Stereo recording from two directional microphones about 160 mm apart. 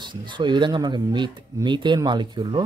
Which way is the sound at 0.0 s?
30° right (ahead or behind).